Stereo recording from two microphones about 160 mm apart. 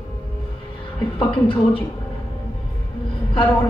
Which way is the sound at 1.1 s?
35° left (ahead or behind).